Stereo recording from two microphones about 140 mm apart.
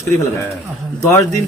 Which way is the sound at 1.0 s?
20° left (ahead or behind).